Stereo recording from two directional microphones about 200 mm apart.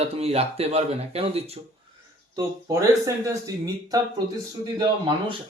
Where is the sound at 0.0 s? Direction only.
30° right (ahead or behind).